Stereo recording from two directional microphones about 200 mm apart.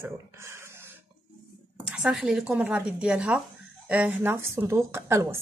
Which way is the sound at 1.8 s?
Centre (ahead or behind).